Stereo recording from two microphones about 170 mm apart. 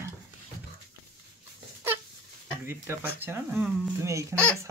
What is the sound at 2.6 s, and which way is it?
Speech, 15° right (ahead or behind).